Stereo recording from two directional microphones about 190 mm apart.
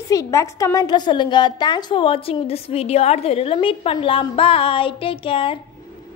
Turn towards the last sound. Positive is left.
turn(degrees=30)  # may be behind; listen again after turning